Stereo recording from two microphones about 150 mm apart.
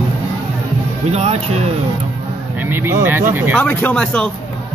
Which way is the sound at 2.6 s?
15° right (ahead or behind).